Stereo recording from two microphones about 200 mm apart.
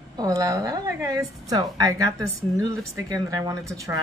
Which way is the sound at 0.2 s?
15° right (ahead or behind).